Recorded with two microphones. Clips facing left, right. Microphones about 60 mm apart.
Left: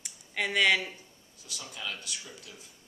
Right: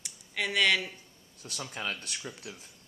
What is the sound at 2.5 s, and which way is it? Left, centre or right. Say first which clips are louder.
Speech: right 5 dB; right.